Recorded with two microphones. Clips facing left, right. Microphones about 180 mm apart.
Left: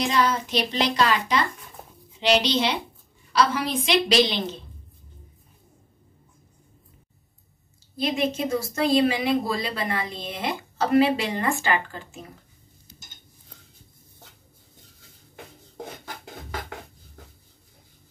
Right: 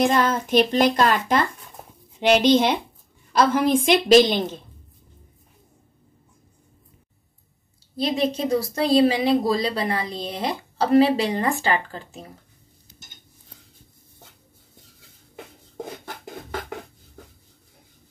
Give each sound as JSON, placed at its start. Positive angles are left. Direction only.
{"t": 0.0, "sound": "speech", "side_deg": -50}
{"t": 7.9, "sound": "speech", "side_deg": -35}